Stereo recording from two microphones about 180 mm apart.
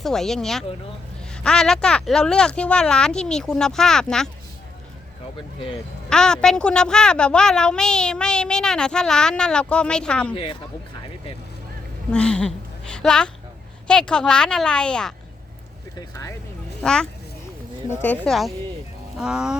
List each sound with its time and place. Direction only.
0.0 s a woman's voice: centre (ahead or behind)
6.1 s a woman's voice: 5° left (ahead or behind)
10.3 s speech: 30° left (ahead or behind)
12.1 s a woman's voice: 5° left (ahead or behind)
16.0 s speech: 20° left (ahead or behind)
16.8 s a woman's voice: 5° left (ahead or behind)